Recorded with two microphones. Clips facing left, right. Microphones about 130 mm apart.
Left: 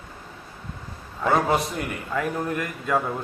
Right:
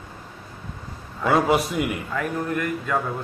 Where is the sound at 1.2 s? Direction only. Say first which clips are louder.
Right 2 dB; 5° right (ahead or behind).